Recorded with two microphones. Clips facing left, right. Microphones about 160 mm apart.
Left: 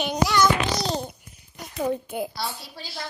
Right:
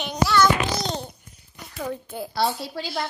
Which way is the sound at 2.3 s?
80° right.